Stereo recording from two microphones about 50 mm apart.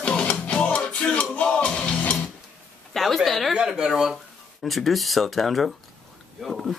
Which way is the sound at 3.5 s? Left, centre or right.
Centre.